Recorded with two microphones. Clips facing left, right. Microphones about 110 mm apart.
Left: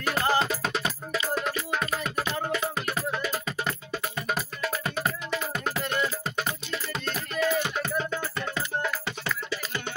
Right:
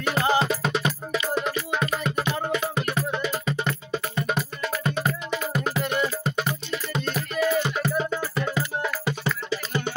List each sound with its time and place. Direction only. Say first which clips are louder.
0.0 s music: right 3 dB; centre (ahead or behind)
9.2 s music: right 4 dB; 20° right (ahead or behind)